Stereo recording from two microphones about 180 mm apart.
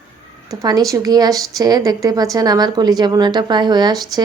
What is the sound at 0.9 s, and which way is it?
A woman's voice, 20° right (ahead or behind).